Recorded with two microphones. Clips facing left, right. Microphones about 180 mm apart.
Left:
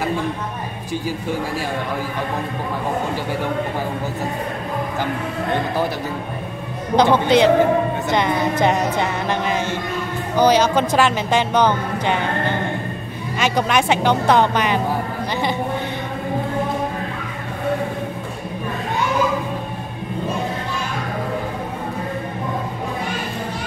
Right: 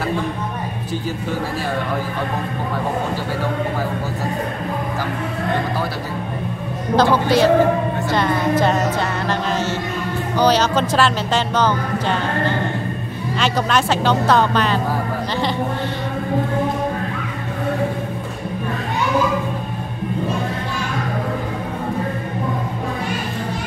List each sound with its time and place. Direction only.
7.0 s speech: 20° left (ahead or behind)
10.3 s speech: 10° left (ahead or behind)